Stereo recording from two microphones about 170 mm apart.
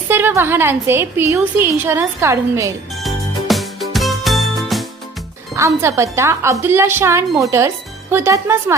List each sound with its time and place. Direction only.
0.1 s a woman's voice: 15° right (ahead or behind)
2.9 s music: centre (ahead or behind)
5.5 s a woman's voice: 15° right (ahead or behind)